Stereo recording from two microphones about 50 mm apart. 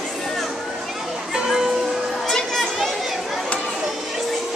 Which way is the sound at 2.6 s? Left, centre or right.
Centre.